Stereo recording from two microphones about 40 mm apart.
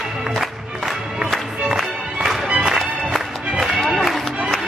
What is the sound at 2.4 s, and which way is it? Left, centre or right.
Music, centre.